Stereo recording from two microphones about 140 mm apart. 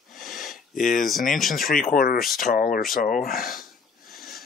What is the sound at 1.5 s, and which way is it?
Speech, 90° left.